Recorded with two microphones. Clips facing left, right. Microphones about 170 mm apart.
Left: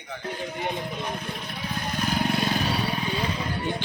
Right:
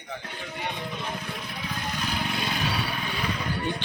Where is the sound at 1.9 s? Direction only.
45° left (ahead or behind).